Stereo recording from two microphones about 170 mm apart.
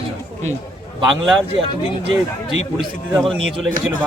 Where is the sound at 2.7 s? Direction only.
Centre (ahead or behind).